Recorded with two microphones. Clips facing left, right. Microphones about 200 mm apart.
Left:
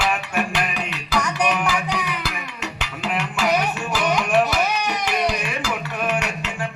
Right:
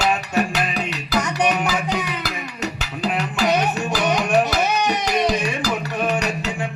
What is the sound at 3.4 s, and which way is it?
Music, 20° right (ahead or behind).